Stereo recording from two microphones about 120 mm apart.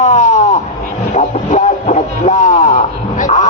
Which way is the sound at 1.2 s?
75° left (ahead or behind).